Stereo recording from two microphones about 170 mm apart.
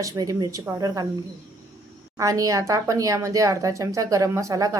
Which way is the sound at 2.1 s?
20° right (ahead or behind).